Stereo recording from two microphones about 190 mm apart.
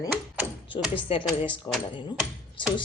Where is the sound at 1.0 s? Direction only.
25° left (ahead or behind).